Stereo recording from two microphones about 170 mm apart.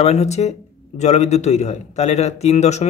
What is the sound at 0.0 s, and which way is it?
A man's voice, 40° left (ahead or behind).